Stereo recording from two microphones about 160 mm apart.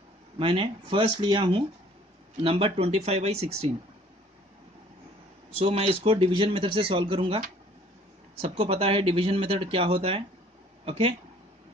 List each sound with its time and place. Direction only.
0.4 s speech: 35° right (ahead or behind)
5.5 s speech: 40° right (ahead or behind)